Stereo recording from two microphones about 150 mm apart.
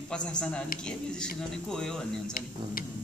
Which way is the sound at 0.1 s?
5° left (ahead or behind).